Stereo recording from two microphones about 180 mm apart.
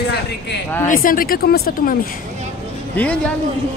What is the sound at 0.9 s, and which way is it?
Speech, 50° left (ahead or behind).